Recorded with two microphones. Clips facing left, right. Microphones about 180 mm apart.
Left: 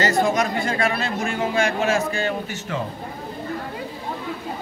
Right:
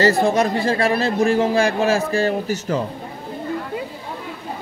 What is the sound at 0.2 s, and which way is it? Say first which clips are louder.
Speech: right 3 dB; 30° right (ahead or behind).